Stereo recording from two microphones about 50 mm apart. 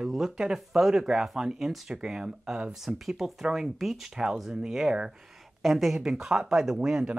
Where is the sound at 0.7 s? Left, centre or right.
Centre.